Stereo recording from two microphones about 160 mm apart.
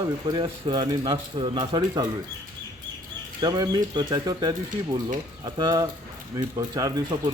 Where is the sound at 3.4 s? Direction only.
25° right (ahead or behind).